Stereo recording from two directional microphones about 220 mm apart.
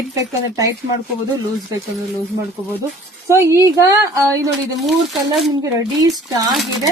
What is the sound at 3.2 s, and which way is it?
A woman's voice, 10° right (ahead or behind).